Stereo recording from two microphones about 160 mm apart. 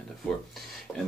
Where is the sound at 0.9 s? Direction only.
20° left (ahead or behind).